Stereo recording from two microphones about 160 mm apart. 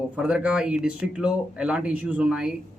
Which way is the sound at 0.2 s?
5° right (ahead or behind).